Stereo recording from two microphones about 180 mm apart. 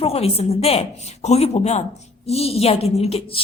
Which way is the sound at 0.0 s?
35° left (ahead or behind).